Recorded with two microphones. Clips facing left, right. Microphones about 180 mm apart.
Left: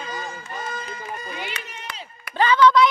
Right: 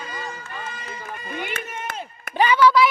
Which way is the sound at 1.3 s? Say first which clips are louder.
Right 3 dB; 50° right (ahead or behind).